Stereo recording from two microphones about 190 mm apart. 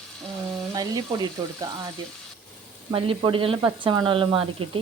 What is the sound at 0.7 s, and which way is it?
Speech, 20° right (ahead or behind).